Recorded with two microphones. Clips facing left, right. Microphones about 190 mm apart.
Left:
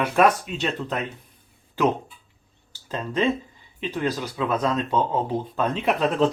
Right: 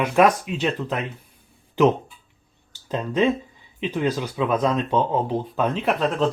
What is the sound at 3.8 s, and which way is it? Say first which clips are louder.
Speech: right 3 dB; 15° right (ahead or behind).